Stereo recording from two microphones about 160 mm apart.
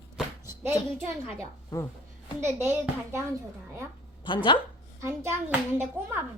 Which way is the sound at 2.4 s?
15° right (ahead or behind).